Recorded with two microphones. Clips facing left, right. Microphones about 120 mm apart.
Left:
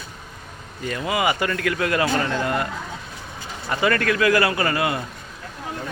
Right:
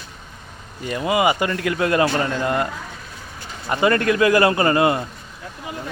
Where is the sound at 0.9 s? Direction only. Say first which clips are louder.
Right 4 dB; 25° right (ahead or behind).